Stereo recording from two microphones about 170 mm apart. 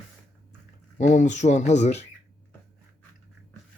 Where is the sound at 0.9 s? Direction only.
45° left (ahead or behind).